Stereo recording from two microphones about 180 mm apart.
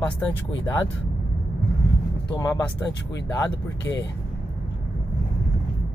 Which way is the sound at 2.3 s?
20° left (ahead or behind).